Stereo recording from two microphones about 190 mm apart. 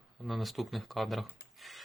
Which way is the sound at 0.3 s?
Centre (ahead or behind).